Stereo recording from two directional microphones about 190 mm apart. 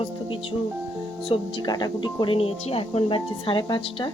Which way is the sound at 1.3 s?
20° left (ahead or behind).